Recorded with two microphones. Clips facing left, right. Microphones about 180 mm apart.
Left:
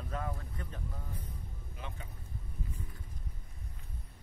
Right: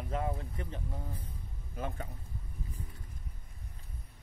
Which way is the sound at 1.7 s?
45° right (ahead or behind).